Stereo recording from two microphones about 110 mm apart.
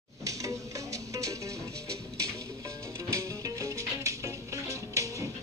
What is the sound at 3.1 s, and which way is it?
Music, 30° right (ahead or behind).